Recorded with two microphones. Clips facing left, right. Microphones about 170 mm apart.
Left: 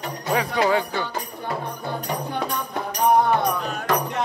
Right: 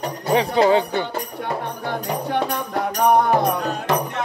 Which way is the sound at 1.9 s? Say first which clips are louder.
Right 4 dB; 75° right (ahead or behind).